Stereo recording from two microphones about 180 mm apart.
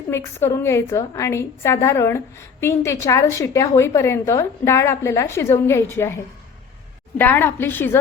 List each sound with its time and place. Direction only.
0.1 s a woman's voice: 15° left (ahead or behind)